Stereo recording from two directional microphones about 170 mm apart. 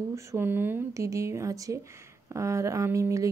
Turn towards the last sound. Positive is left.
turn(degrees=-20)  # may be behind; listen again after turning